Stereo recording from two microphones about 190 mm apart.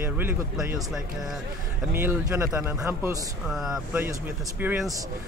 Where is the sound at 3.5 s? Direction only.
Centre (ahead or behind).